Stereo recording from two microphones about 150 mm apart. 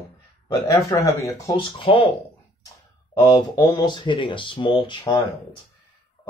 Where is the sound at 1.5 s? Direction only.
35° left (ahead or behind).